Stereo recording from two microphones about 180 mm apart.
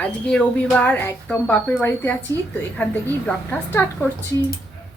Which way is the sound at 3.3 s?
10° left (ahead or behind).